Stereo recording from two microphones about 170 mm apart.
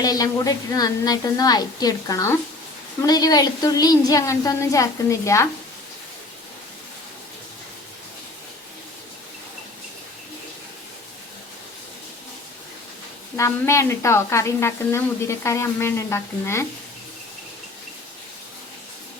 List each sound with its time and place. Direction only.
0.0 s a woman's voice: 20° left (ahead or behind)
13.3 s a woman's voice: 15° left (ahead or behind)